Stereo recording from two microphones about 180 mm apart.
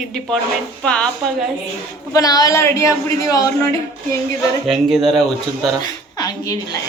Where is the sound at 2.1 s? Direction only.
20° left (ahead or behind).